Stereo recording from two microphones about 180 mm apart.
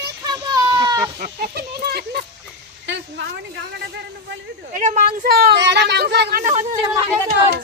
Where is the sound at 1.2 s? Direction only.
60° right (ahead or behind).